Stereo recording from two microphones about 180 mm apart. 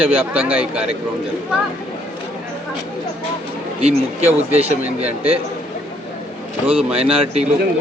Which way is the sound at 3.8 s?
35° right (ahead or behind).